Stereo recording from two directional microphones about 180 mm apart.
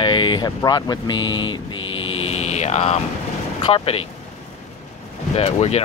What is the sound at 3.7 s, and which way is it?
Speech, 30° left (ahead or behind).